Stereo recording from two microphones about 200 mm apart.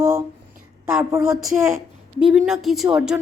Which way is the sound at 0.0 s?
15° right (ahead or behind).